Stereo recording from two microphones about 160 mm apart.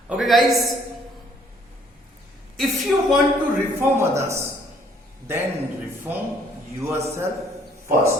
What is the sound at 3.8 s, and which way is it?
Speech, 15° right (ahead or behind).